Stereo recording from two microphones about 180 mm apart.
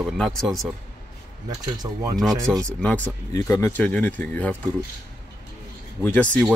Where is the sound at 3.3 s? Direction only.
20° left (ahead or behind).